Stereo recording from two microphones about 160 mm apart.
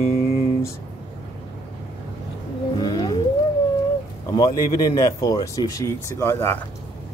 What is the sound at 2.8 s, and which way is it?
Whale vocalization, 25° left (ahead or behind).